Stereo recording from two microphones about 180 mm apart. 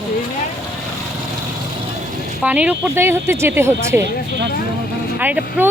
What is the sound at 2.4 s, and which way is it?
Speech, 5° right (ahead or behind).